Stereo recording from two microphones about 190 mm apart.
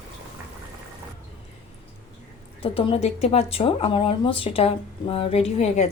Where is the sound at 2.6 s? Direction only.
30° left (ahead or behind).